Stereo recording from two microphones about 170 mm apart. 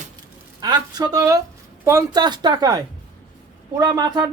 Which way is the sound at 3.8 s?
25° right (ahead or behind).